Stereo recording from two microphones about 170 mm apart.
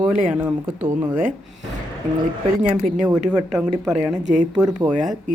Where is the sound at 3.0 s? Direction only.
5° right (ahead or behind).